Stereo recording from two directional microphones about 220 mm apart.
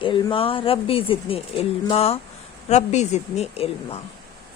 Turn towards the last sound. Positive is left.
turn(degrees=25)  # may be behind; listen again after turning